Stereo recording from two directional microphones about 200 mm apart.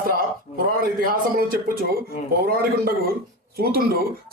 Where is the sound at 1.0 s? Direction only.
45° right (ahead or behind).